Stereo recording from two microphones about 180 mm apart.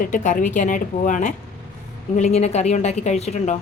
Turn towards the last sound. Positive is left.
turn(degrees=40)  # may be behind; listen again after turning